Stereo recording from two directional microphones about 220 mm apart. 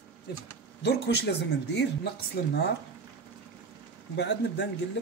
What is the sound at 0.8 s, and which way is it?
Speech, 50° left (ahead or behind).